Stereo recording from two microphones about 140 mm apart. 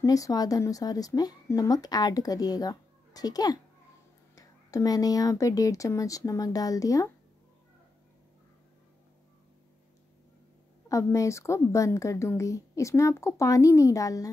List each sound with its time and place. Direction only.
0.0 s speech: 25° left (ahead or behind)
10.9 s speech: 20° left (ahead or behind)